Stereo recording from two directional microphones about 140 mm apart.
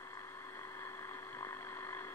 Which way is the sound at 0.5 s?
20° left (ahead or behind).